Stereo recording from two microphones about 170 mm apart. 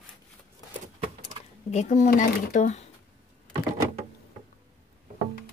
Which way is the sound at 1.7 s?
45° left (ahead or behind).